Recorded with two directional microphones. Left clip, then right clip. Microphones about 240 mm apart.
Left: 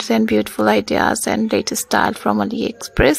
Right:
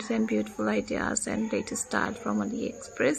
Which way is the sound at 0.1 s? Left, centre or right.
Left.